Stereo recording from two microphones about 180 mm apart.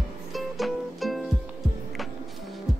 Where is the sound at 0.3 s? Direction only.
Centre (ahead or behind).